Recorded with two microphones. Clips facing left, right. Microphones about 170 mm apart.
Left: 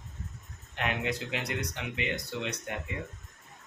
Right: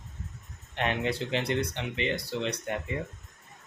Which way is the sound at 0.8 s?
30° right (ahead or behind).